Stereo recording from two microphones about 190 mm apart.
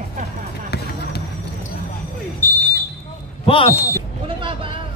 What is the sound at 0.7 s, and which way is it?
Basketball bounce, 60° left (ahead or behind).